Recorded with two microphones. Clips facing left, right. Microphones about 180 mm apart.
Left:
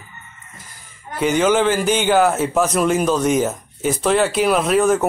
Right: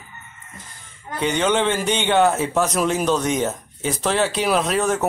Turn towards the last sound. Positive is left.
turn(degrees=0)  # may be behind; listen again after turning